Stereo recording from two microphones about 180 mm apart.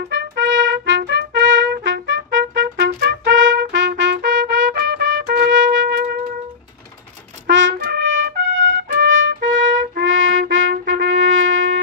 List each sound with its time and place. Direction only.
0.1 s trumpet: 80° right
5.2 s trumpet: 75° right (ahead or behind)
7.4 s trumpet: 90° right